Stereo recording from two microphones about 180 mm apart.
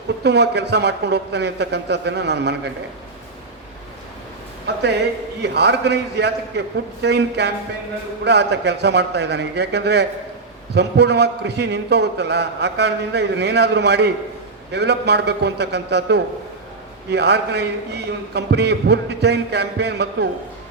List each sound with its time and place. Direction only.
0.2 s a man's voice: 70° right (ahead or behind)
5.4 s a man's voice: 70° right (ahead or behind)